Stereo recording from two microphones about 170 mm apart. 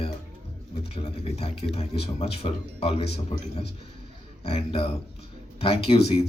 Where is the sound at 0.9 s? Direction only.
35° left (ahead or behind).